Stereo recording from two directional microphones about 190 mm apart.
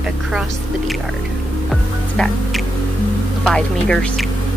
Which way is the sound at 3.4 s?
5° left (ahead or behind).